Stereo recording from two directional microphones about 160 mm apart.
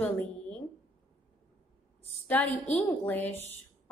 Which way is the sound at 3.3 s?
15° left (ahead or behind).